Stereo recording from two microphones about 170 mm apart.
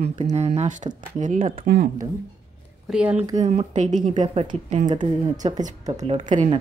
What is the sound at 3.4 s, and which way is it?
Speech, 45° right (ahead or behind).